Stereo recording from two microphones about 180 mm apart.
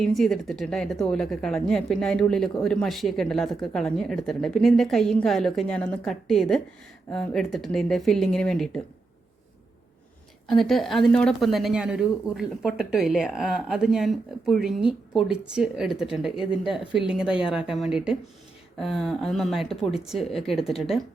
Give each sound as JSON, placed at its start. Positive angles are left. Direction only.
{"t": 0.0, "sound": "speech", "side_deg": 0}
{"t": 10.4, "sound": "speech", "side_deg": 0}